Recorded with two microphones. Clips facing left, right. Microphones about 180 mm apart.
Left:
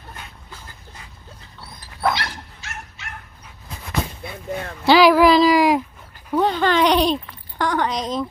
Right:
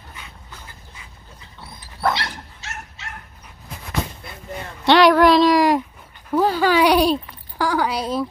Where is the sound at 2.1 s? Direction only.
30° right (ahead or behind).